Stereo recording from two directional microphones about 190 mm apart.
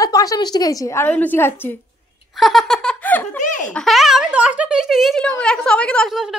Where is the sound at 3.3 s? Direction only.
40° left (ahead or behind).